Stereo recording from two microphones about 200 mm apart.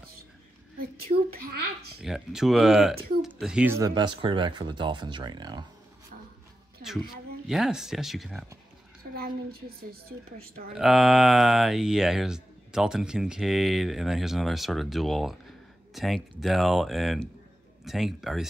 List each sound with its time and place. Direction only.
1.4 s speech: 50° right (ahead or behind)
2.0 s speech: centre (ahead or behind); by 5.7 s 20° right (ahead or behind)
7.4 s speech: centre (ahead or behind)
9.1 s a woman's voice: 50° right (ahead or behind)
10.7 s speech: centre (ahead or behind)